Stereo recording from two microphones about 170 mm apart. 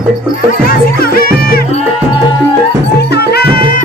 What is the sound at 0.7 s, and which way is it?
Music, 60° left (ahead or behind).